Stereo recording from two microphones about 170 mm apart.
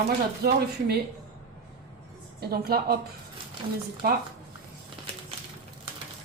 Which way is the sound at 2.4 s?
65° right (ahead or behind).